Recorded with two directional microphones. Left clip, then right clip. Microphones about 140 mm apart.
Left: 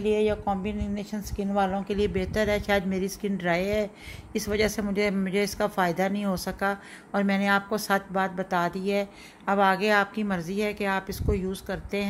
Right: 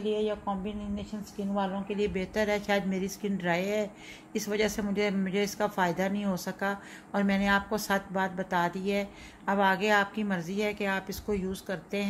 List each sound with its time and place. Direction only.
0.0 s speech: 65° left (ahead or behind)
2.0 s a woman's voice: 35° left (ahead or behind)